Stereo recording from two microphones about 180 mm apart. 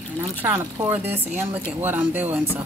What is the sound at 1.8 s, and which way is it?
Speech, 10° right (ahead or behind).